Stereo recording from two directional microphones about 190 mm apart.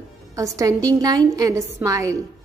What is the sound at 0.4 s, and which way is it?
A woman's voice, 15° right (ahead or behind).